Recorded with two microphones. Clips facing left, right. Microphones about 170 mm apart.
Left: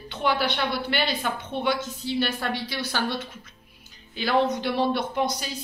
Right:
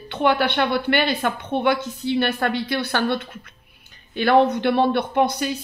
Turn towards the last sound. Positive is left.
turn(degrees=-60)  # may be behind; listen again after turning